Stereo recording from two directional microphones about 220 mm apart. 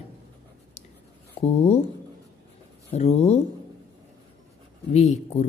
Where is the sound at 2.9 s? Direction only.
30° left (ahead or behind).